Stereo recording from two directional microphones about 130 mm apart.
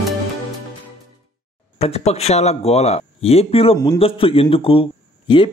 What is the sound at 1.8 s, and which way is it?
A man's voice, 50° left (ahead or behind).